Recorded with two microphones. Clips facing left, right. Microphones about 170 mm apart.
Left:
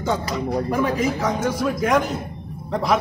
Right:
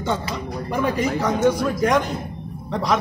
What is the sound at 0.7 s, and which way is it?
A man's voice, centre (ahead or behind).